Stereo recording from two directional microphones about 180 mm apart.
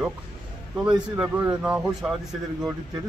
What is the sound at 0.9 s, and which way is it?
Speech, 25° right (ahead or behind).